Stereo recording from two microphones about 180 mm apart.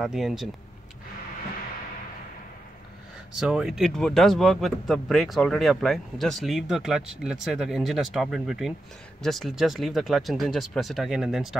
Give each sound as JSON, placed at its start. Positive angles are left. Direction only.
{"t": 0.0, "sound": "speech", "side_deg": 0}
{"t": 3.3, "sound": "speech", "side_deg": -5}